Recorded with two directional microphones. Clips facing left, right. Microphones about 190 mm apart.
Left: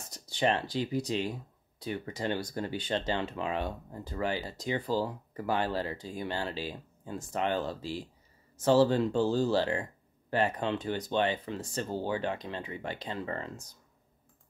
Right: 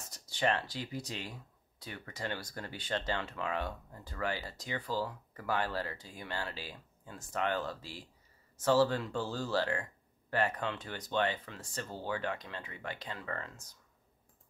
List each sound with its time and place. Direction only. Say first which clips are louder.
0.1 s speech: left 4 dB; 20° left (ahead or behind)